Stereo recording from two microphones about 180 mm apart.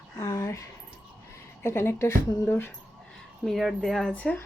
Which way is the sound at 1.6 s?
15° left (ahead or behind).